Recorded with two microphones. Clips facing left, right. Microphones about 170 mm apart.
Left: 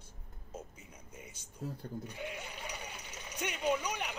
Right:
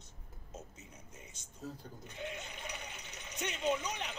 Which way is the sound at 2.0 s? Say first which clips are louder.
Left 1 dB; 10° left (ahead or behind).